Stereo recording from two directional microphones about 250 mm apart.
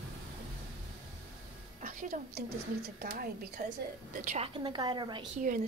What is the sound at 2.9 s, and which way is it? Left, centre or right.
A woman's voice, right.